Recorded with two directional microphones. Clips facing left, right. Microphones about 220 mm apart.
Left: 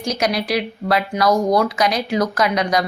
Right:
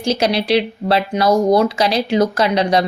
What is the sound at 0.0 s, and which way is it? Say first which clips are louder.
Speech: right 4 dB; 30° right (ahead or behind).